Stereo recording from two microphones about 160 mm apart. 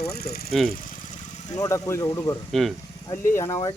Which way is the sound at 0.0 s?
80° left.